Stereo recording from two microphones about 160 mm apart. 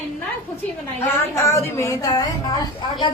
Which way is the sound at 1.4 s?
15° left (ahead or behind).